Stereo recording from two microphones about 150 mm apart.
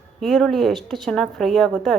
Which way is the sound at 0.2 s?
Centre (ahead or behind).